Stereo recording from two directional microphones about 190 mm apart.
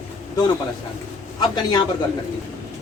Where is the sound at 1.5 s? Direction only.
20° left (ahead or behind).